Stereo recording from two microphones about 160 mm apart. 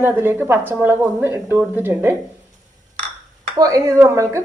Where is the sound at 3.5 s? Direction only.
20° right (ahead or behind).